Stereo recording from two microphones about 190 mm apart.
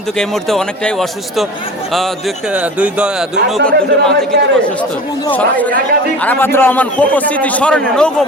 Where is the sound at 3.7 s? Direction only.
55° right (ahead or behind).